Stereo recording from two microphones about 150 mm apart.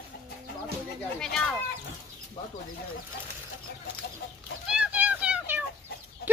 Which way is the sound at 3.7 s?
90° left.